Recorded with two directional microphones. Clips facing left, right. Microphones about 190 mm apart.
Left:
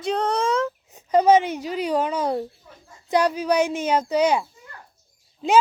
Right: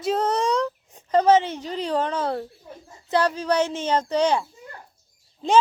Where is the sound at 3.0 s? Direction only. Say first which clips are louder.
Left 2 dB; 15° left (ahead or behind).